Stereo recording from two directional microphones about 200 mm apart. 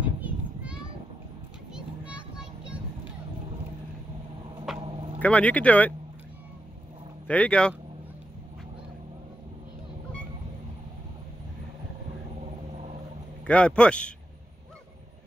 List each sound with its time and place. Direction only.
0.0 s children playing: 5° right (ahead or behind)
4.7 s vehicle: 25° right (ahead or behind)
5.2 s speech: 5° left (ahead or behind)
7.2 s a man's voice: 5° left (ahead or behind)
13.5 s a man's voice: 5° left (ahead or behind)